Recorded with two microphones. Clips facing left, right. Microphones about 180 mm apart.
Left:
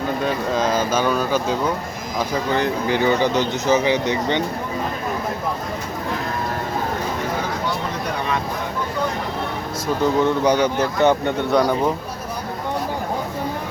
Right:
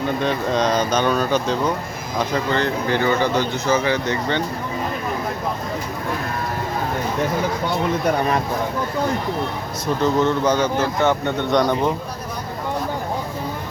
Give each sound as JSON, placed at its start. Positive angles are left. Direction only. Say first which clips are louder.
{"t": 0.2, "sound": "speech", "louder": "right 1 dB", "side_deg": 5}
{"t": 10.0, "sound": "speech", "louder": "left 1 dB", "side_deg": 15}